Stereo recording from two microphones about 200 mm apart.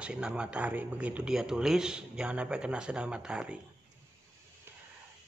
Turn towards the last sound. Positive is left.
turn(degrees=-5)  # may be behind; listen again after turning